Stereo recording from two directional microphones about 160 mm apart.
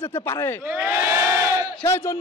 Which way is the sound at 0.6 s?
10° right (ahead or behind).